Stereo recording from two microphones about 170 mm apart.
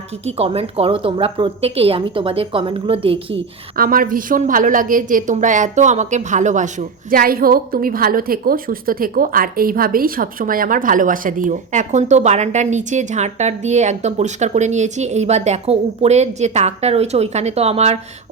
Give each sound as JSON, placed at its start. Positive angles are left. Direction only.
{"t": 0.3, "sound": "a woman's voice", "side_deg": -35}
{"t": 3.3, "sound": "a woman's voice", "side_deg": -60}